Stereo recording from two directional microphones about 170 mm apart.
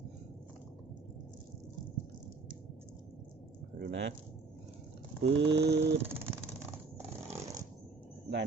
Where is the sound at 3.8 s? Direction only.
90° right.